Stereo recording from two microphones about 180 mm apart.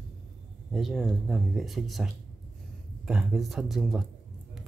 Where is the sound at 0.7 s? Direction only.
Centre (ahead or behind).